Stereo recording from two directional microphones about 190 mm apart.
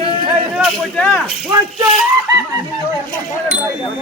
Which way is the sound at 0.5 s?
Centre (ahead or behind).